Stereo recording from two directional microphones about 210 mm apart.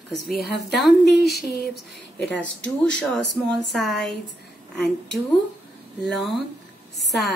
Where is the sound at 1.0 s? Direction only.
50° left (ahead or behind).